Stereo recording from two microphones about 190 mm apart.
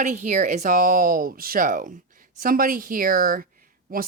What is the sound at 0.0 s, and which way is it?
Speech, 40° right (ahead or behind).